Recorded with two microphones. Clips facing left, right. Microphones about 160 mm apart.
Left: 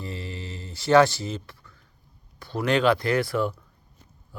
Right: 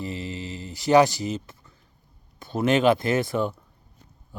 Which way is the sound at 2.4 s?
20° right (ahead or behind).